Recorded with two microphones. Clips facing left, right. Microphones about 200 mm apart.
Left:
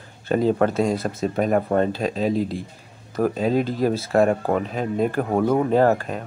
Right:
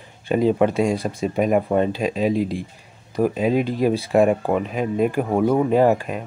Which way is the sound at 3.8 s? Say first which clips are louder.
Right 2 dB; 15° right (ahead or behind).